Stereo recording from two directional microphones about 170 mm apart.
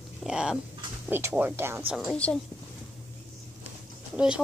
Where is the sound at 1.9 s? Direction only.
5° left (ahead or behind).